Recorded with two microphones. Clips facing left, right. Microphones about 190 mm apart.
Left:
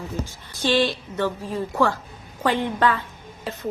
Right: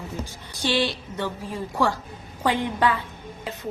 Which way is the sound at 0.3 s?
15° right (ahead or behind).